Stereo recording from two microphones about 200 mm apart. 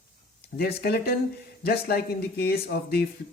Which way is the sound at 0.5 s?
50° left (ahead or behind).